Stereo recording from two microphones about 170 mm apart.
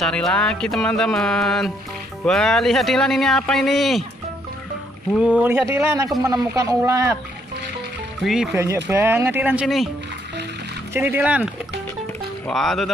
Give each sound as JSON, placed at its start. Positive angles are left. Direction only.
{"t": 0.0, "sound": "speech", "side_deg": 5}
{"t": 5.1, "sound": "speech", "side_deg": -5}
{"t": 6.0, "sound": "speech", "side_deg": 0}
{"t": 6.3, "sound": "speech", "side_deg": -20}
{"t": 8.2, "sound": "speech", "side_deg": 0}
{"t": 8.5, "sound": "speech", "side_deg": -15}
{"t": 10.9, "sound": "speech", "side_deg": -10}
{"t": 12.4, "sound": "speech", "side_deg": 0}